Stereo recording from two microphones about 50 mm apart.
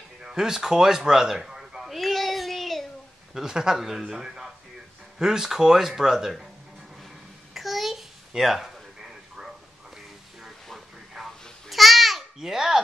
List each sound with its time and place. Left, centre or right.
0.2 s speech: centre
1.8 s child singing: centre
3.3 s speech: centre
7.5 s a sound: centre
10.7 s a sound: centre
11.7 s babbling: centre